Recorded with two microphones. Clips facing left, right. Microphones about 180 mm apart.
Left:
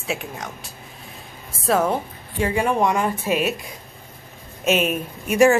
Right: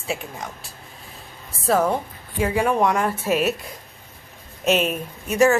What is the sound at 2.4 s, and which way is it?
Speech, centre (ahead or behind).